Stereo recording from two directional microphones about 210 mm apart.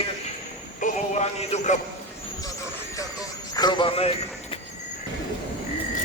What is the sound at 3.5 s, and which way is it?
Speech, 20° left (ahead or behind).